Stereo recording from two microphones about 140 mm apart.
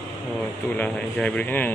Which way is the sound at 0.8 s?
10° left (ahead or behind).